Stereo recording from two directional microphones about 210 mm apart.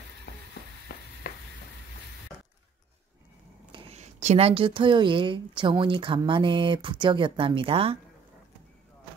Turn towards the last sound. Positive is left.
turn(degrees=-25)  # may be behind; listen again after turning